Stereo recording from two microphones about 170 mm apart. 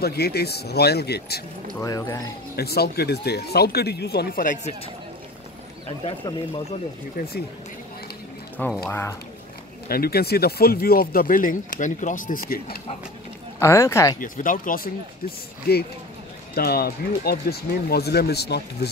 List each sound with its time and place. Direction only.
0.0 s speech: 70° left (ahead or behind)
1.8 s speech: 20° left (ahead or behind)
2.5 s speech: 70° left (ahead or behind)
7.2 s speech: 60° left (ahead or behind)
8.5 s speech: 5° left (ahead or behind)
9.8 s speech: 65° left (ahead or behind)
13.6 s speech: 15° left (ahead or behind)
14.2 s speech: 50° left (ahead or behind)
15.7 s speech: 65° left (ahead or behind)